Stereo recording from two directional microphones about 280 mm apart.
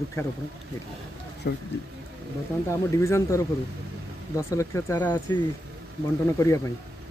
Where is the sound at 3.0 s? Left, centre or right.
Centre.